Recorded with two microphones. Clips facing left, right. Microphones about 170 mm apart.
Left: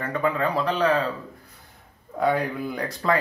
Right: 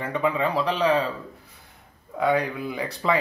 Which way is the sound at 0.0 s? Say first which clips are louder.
Even; 5° right (ahead or behind).